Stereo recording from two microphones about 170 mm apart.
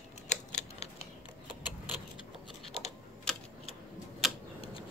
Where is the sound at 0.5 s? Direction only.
40° left (ahead or behind).